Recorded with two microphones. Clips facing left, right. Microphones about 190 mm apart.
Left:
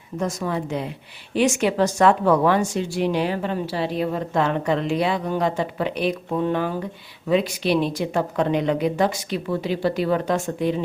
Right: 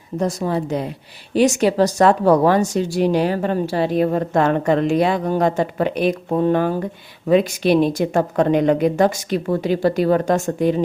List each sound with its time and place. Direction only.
0.2 s speech: 35° right (ahead or behind)